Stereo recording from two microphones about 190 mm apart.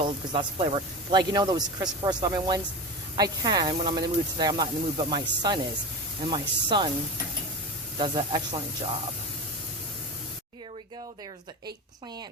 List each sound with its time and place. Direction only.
0.0 s speech: 25° right (ahead or behind)
7.9 s speech: 25° right (ahead or behind)